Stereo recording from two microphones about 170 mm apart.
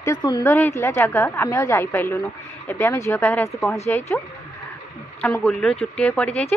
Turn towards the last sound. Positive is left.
turn(degrees=5)  # may be behind; listen again after turning